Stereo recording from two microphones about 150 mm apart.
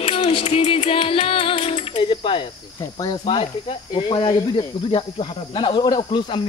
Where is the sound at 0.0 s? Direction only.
35° left (ahead or behind).